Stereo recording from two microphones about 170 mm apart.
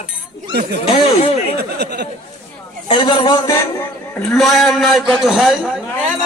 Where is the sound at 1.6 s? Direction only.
75° right (ahead or behind).